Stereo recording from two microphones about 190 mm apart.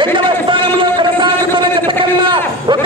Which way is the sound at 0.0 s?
25° right (ahead or behind).